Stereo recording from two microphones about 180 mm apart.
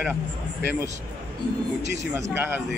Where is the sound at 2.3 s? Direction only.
10° right (ahead or behind).